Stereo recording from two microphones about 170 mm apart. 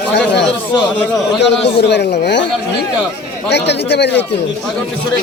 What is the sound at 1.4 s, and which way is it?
Speech, 85° left.